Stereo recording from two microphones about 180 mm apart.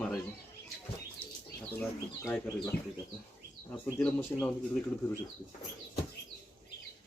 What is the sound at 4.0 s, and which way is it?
Speech, 10° left (ahead or behind).